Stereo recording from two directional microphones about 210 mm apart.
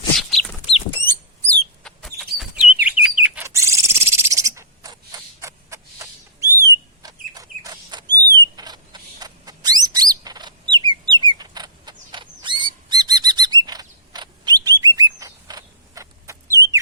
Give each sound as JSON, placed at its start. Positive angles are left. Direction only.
{"t": 0.2, "sound": "chicken", "side_deg": 0}
{"t": 1.0, "sound": "bird", "side_deg": 5}
{"t": 5.4, "sound": "rodents", "side_deg": -15}